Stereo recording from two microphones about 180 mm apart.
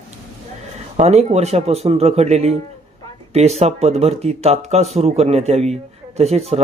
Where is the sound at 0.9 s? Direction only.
35° right (ahead or behind).